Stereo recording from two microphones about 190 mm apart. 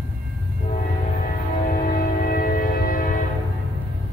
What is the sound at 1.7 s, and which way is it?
Train, 45° left (ahead or behind).